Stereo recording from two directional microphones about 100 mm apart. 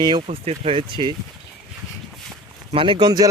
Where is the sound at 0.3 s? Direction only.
85° right; by 1.1 s 50° right (ahead or behind).